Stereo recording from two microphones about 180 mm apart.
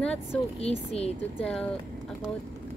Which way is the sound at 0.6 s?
35° left (ahead or behind).